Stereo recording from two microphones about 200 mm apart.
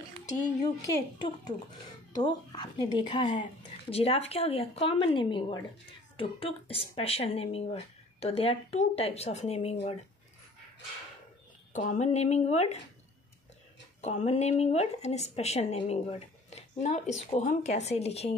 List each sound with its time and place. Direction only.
2.1 s speech: 20° left (ahead or behind)
11.7 s speech: 40° left (ahead or behind)
14.0 s speech: 35° left (ahead or behind)